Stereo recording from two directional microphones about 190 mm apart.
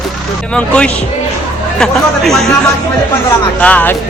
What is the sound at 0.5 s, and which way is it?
Speech, 5° left (ahead or behind).